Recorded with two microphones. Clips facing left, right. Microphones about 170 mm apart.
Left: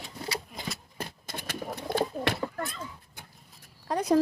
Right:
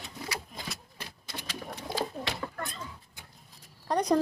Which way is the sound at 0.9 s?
50° left (ahead or behind).